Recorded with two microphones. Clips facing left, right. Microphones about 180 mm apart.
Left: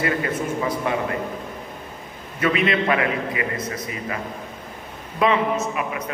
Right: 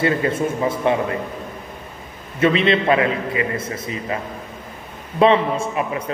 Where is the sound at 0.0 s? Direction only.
25° right (ahead or behind).